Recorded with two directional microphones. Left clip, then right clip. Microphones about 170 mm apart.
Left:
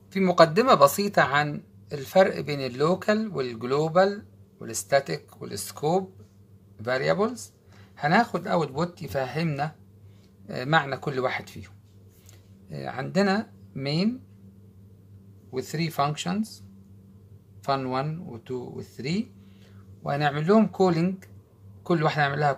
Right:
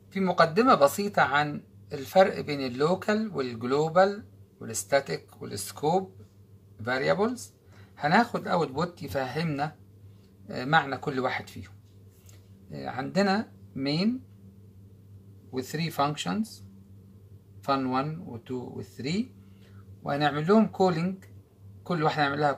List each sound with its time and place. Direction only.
0.1 s speech: 50° left (ahead or behind)
12.7 s speech: 45° left (ahead or behind)
15.5 s speech: 40° left (ahead or behind)
17.6 s speech: 40° left (ahead or behind)